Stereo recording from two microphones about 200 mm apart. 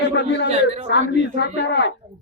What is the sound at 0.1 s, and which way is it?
Speech, 60° left (ahead or behind).